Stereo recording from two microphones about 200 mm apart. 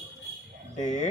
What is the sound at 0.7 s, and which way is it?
Speech, 35° left (ahead or behind).